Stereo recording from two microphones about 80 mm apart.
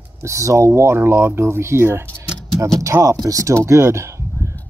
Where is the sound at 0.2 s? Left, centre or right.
Right.